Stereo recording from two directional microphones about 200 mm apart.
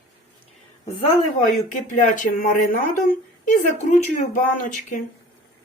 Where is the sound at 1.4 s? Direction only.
40° left (ahead or behind).